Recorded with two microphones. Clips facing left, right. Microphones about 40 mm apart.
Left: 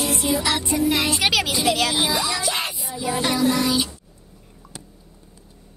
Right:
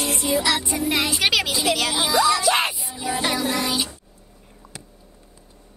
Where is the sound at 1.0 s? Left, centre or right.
Centre.